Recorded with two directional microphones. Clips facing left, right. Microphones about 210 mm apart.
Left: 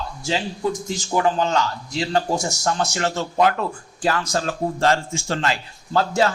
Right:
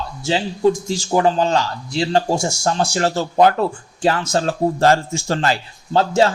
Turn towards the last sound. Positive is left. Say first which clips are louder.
# right 4 dB
turn(degrees=-25)  # may be behind; listen again after turning